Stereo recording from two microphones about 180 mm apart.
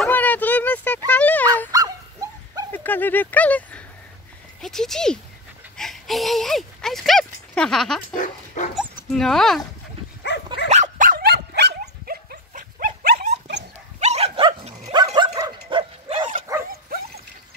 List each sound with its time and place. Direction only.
0.0 s a sound: 10° left (ahead or behind)
1.7 s dog: 20° right (ahead or behind)
2.7 s speech: 10° left (ahead or behind)
5.8 s a sound: centre (ahead or behind)
8.1 s speech: 45° left (ahead or behind)
8.7 s speech: centre (ahead or behind)
10.2 s dog: 75° left (ahead or behind)
10.7 s dog: 45° right (ahead or behind)
15.1 s dog: 25° right (ahead or behind)
15.7 s bow-wow: 30° right (ahead or behind)